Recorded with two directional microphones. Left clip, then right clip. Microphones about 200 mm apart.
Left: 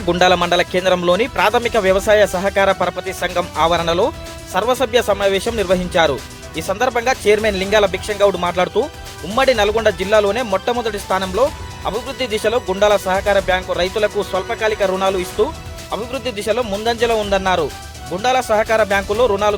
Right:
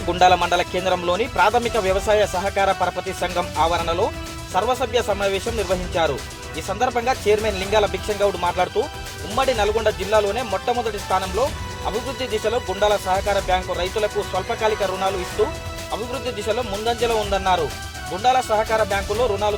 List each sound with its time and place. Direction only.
0.1 s speech: 20° left (ahead or behind)